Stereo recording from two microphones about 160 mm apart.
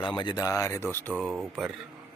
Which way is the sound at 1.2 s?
Centre (ahead or behind).